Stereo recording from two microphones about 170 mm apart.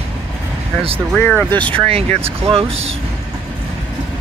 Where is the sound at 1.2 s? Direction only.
10° left (ahead or behind).